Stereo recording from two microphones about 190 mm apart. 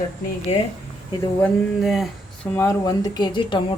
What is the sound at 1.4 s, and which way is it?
Speech, 5° left (ahead or behind).